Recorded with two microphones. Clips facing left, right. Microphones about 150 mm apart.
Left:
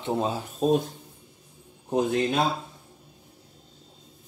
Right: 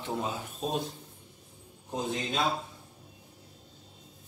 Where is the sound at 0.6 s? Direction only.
45° left (ahead or behind).